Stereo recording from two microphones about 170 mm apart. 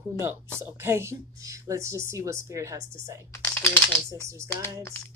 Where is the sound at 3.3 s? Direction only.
15° left (ahead or behind).